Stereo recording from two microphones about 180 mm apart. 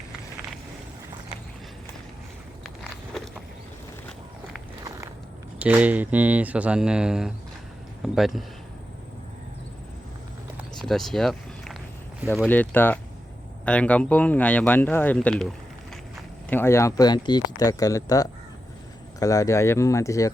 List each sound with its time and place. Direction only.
4.8 s walk: 20° right (ahead or behind)
5.5 s speech: 10° right (ahead or behind)
10.8 s a sound: centre (ahead or behind)
12.5 s speech: 10° left (ahead or behind)